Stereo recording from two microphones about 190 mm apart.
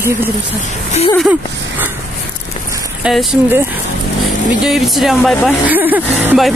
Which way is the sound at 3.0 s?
Centre (ahead or behind).